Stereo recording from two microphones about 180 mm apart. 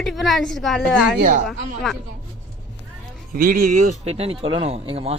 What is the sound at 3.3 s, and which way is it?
Speech, 50° right (ahead or behind).